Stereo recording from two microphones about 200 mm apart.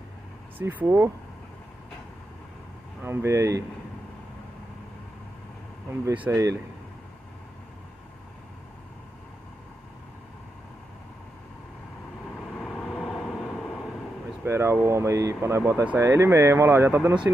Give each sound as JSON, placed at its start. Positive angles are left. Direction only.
{"t": 0.6, "sound": "speech", "side_deg": -10}
{"t": 3.0, "sound": "speech", "side_deg": -10}
{"t": 5.9, "sound": "speech", "side_deg": -10}
{"t": 12.5, "sound": "vehicle", "side_deg": 5}
{"t": 14.4, "sound": "speech", "side_deg": -10}